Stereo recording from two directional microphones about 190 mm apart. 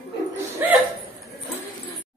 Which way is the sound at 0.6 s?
10° right (ahead or behind).